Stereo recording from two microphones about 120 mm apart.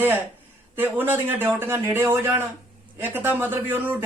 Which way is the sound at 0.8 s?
15° right (ahead or behind).